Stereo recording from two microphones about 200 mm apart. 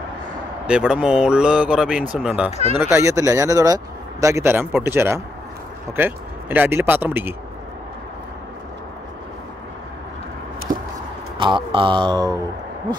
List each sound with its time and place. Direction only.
0.7 s speech: 5° right (ahead or behind)
2.9 s speech: 15° right (ahead or behind)
10.7 s a sound: 40° right (ahead or behind)
11.3 s speech: 25° right (ahead or behind)